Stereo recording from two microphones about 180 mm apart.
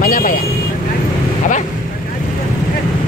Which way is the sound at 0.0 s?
50° left (ahead or behind).